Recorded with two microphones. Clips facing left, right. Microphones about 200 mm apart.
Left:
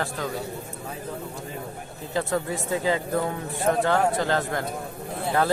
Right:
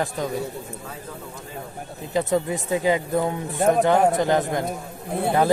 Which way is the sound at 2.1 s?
20° right (ahead or behind).